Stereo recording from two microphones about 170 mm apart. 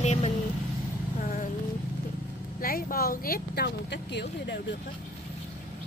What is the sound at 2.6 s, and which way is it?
Speech, 60° left (ahead or behind).